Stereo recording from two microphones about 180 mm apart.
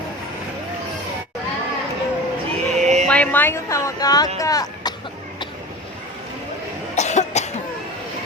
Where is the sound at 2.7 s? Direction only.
40° right (ahead or behind).